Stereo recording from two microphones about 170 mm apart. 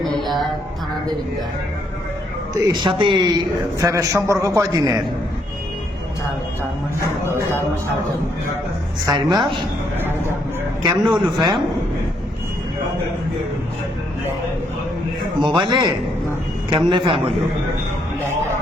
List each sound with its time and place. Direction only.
0.2 s music: centre (ahead or behind)
2.6 s speech: 25° right (ahead or behind)
9.0 s speech: 25° right (ahead or behind)
11.2 s speech: 25° right (ahead or behind)
15.4 s speech: 25° right (ahead or behind)